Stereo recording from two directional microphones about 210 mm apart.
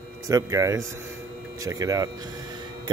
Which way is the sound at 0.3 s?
15° right (ahead or behind).